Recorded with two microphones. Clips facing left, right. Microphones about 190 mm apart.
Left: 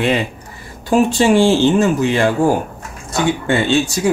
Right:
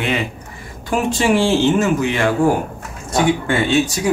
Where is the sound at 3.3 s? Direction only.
25° left (ahead or behind).